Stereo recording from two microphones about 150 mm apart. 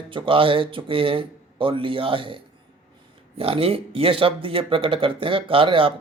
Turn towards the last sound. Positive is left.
turn(degrees=-35)  # may be behind; listen again after turning